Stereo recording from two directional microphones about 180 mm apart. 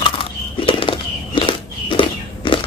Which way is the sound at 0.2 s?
30° left (ahead or behind).